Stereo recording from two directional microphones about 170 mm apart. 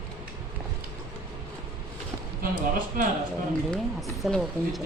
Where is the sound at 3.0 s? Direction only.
55° right (ahead or behind).